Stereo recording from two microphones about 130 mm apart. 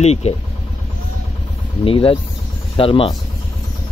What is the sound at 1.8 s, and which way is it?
Speech, 45° left (ahead or behind).